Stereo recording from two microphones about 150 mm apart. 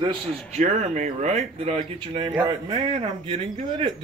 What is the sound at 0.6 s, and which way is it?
Speech, 50° right (ahead or behind).